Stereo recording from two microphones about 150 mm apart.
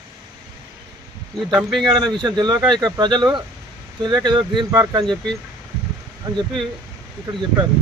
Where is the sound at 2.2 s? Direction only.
30° right (ahead or behind).